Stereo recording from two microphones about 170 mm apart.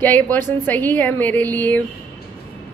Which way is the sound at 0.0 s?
10° left (ahead or behind).